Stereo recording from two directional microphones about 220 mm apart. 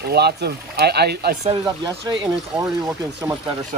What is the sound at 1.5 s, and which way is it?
Speech, 15° right (ahead or behind).